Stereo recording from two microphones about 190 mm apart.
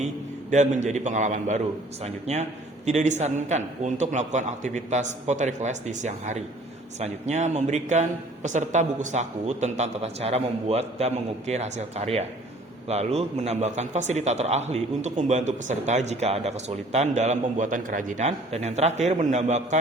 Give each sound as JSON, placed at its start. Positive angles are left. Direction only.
{"t": 0.5, "sound": "a man's voice", "side_deg": -40}